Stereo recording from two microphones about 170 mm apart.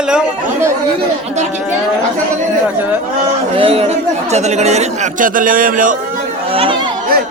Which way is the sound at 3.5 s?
35° right (ahead or behind).